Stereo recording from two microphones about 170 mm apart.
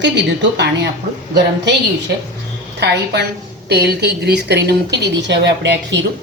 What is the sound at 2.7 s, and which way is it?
A woman's voice, 80° right.